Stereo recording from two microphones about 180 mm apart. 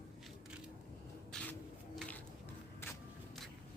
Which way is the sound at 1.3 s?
5° left (ahead or behind).